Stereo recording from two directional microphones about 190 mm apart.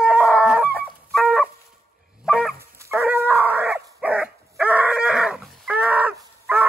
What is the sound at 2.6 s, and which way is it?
Dog, 15° right (ahead or behind).